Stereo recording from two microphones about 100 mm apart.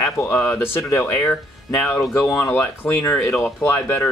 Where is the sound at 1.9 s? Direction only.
25° left (ahead or behind).